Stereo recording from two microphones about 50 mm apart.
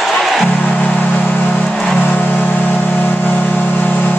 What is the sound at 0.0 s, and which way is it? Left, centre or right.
Music, centre.